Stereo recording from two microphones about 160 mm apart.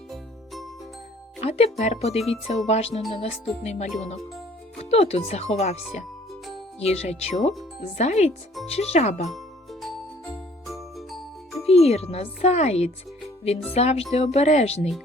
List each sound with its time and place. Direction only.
0.1 s music: centre (ahead or behind)
1.4 s speech: 40° left (ahead or behind)
10.7 s music: centre (ahead or behind)
11.7 s speech: 40° left (ahead or behind)